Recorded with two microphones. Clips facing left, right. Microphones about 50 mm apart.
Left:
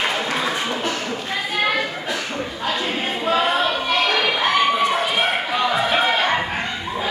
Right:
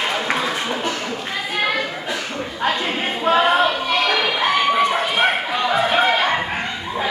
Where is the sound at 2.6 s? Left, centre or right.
Right.